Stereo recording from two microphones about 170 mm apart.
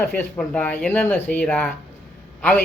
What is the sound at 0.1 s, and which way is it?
Speech, 10° left (ahead or behind).